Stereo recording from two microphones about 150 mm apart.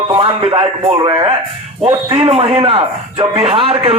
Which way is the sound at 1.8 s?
40° right (ahead or behind).